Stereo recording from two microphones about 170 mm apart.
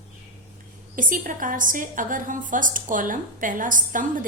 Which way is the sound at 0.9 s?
50° right (ahead or behind).